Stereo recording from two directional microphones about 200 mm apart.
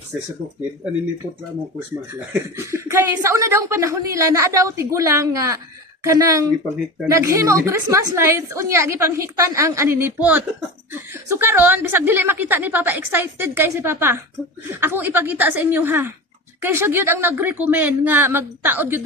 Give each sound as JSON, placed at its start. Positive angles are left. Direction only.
{"t": 2.3, "sound": "a woman's voice", "side_deg": -15}